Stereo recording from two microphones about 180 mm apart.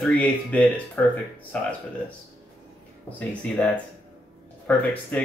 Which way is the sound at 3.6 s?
10° left (ahead or behind).